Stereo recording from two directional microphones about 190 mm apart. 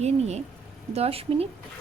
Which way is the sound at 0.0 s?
35° right (ahead or behind).